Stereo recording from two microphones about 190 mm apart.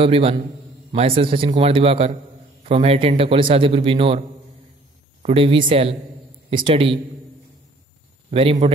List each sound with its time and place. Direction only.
0.0 s a man's voice: 30° right (ahead or behind)
5.2 s a man's voice: 30° right (ahead or behind)
8.3 s a man's voice: 30° right (ahead or behind)